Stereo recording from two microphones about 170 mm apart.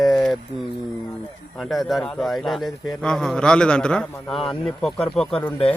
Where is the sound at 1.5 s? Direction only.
Centre (ahead or behind).